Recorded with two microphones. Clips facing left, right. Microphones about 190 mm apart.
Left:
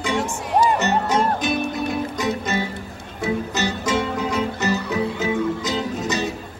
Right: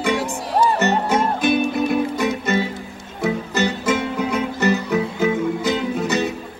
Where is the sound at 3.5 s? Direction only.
55° right (ahead or behind).